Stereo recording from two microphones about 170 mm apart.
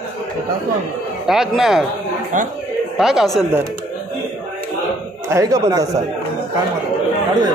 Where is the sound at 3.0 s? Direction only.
Centre (ahead or behind).